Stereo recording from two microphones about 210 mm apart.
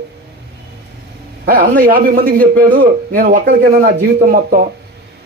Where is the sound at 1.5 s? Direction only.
40° right (ahead or behind).